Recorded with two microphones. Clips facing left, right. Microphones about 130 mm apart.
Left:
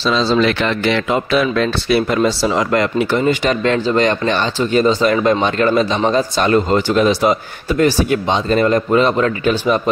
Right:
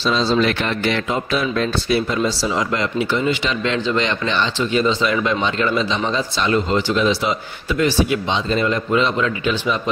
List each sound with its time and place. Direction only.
0.0 s speech: 90° left; by 9.8 s 45° left (ahead or behind)